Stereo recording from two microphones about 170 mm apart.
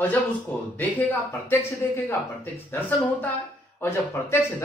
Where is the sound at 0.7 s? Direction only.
15° left (ahead or behind).